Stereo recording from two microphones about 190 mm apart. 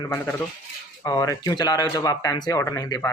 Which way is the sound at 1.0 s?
20° left (ahead or behind).